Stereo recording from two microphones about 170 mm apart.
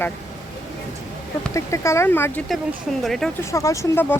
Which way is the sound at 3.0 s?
Centre (ahead or behind).